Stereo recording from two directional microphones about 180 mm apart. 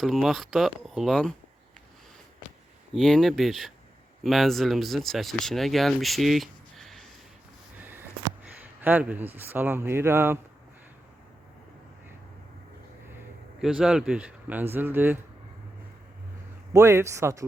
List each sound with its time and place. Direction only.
0.0 s speech: centre (ahead or behind)
2.9 s speech: centre (ahead or behind)
7.8 s a sound: 10° right (ahead or behind)
13.6 s speech: 5° right (ahead or behind)
16.7 s speech: 15° right (ahead or behind)